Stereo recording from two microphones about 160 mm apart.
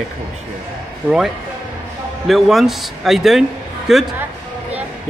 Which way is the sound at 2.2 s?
Centre (ahead or behind).